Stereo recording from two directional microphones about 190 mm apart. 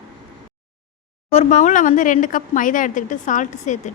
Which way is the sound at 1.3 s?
35° left (ahead or behind).